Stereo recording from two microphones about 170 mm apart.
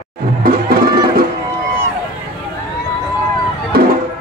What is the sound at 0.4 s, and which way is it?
Music, 60° right (ahead or behind).